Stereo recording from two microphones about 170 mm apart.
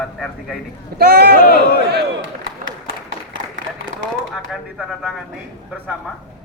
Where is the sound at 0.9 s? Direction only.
70° right (ahead or behind).